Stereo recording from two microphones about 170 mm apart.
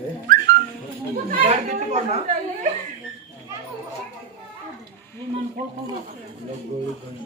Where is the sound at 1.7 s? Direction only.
40° right (ahead or behind).